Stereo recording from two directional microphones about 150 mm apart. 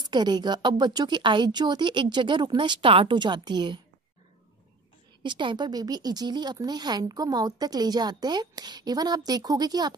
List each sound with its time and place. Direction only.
0.0 s speech: 30° right (ahead or behind)
5.2 s speech: 30° right (ahead or behind)